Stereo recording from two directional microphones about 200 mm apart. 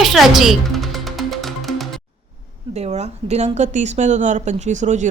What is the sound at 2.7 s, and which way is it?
Speech, 30° right (ahead or behind).